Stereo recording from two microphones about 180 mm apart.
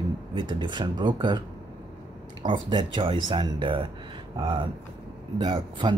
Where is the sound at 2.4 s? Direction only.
25° right (ahead or behind).